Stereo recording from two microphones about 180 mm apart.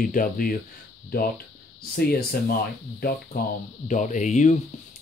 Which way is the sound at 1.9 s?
55° left (ahead or behind).